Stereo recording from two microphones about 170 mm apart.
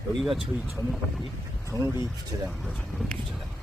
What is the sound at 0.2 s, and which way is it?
Speech, centre (ahead or behind).